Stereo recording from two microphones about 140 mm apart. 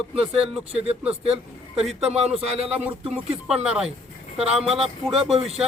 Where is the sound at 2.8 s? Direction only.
10° right (ahead or behind).